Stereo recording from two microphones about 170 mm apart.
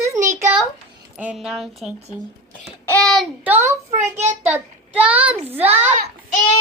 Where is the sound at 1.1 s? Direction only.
5° right (ahead or behind).